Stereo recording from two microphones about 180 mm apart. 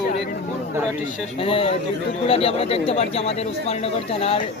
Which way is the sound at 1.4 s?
30° left (ahead or behind).